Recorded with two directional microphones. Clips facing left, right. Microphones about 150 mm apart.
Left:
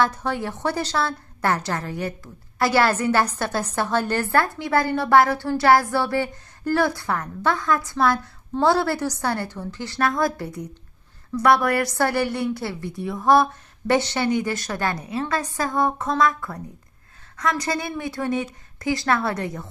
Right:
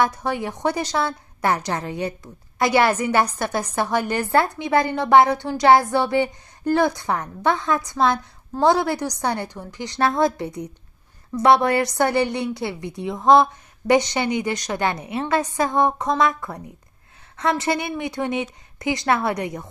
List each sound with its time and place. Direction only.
0.0 s a woman's voice: 10° right (ahead or behind)